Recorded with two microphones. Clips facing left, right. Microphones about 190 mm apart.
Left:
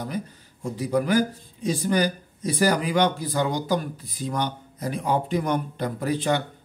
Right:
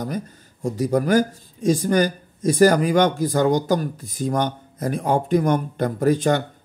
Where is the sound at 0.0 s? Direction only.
45° right (ahead or behind).